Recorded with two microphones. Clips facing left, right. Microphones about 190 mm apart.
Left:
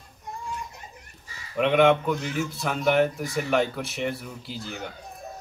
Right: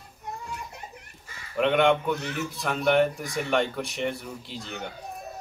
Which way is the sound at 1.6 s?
Centre (ahead or behind).